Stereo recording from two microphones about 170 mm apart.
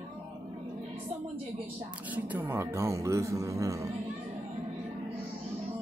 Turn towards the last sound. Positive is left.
turn(degrees=-20)  # may be behind; listen again after turning